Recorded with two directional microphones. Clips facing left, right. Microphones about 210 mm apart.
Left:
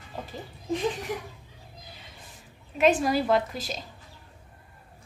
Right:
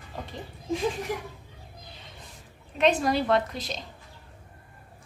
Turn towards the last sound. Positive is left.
turn(degrees=5)  # may be behind; listen again after turning